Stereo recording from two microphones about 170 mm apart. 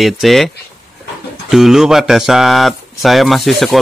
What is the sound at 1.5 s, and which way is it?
A man's voice, centre (ahead or behind).